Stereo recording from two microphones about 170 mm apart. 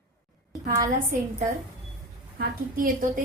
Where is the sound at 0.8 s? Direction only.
45° right (ahead or behind).